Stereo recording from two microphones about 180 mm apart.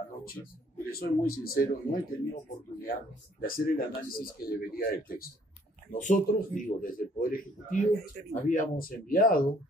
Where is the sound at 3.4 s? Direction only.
55° left (ahead or behind).